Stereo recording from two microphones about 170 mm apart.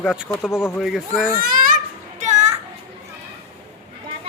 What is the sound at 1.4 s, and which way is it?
Children playing, 55° right (ahead or behind).